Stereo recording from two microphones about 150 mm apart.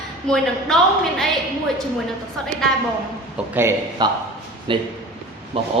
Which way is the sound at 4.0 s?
30° right (ahead or behind).